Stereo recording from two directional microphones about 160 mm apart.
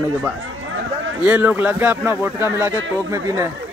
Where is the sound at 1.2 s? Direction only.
10° right (ahead or behind).